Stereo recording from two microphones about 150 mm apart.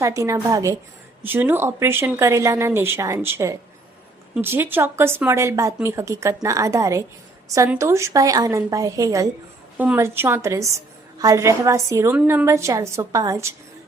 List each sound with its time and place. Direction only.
0.0 s a woman's voice: 20° right (ahead or behind)
12.5 s speech: 20° right (ahead or behind)